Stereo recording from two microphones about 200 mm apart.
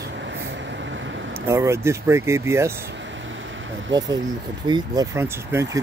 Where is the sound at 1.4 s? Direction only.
15° right (ahead or behind).